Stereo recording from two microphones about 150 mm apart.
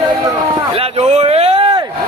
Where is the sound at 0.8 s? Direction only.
45° right (ahead or behind).